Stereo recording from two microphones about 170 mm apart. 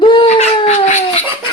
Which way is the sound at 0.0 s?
30° left (ahead or behind).